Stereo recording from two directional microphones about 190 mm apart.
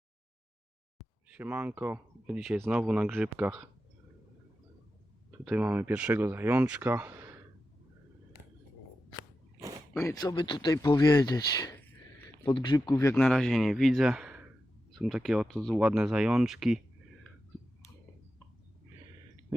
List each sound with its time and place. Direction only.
1.3 s speech: 10° right (ahead or behind)
5.5 s speech: 10° right (ahead or behind)
9.6 s a sound: 20° right (ahead or behind)
9.9 s speech: 15° left (ahead or behind)
13.1 s speech: centre (ahead or behind)